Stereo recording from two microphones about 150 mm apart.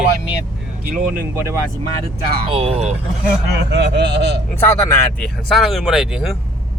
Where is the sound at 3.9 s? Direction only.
90° right.